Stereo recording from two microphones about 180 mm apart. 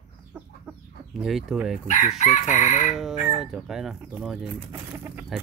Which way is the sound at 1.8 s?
40° left (ahead or behind).